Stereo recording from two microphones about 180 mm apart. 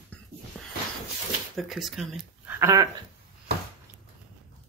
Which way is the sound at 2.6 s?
20° right (ahead or behind).